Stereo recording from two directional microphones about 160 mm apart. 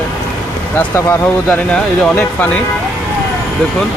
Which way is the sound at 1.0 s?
15° left (ahead or behind).